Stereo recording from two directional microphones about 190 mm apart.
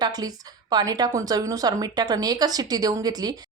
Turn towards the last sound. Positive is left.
turn(degrees=-20)  # may be behind; listen again after turning